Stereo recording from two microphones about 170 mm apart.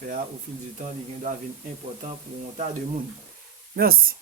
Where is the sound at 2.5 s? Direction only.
45° right (ahead or behind).